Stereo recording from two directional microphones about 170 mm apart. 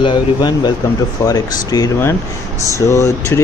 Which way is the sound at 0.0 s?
25° left (ahead or behind).